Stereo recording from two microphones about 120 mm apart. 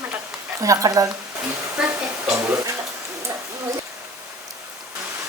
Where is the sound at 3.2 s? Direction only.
25° right (ahead or behind).